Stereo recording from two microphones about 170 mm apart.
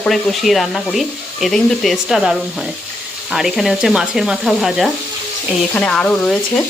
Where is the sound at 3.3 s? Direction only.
Centre (ahead or behind).